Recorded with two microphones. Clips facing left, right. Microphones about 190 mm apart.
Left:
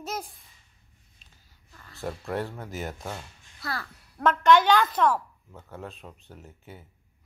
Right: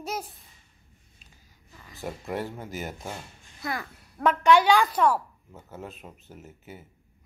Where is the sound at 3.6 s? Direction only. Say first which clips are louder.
Right 2 dB; 20° right (ahead or behind).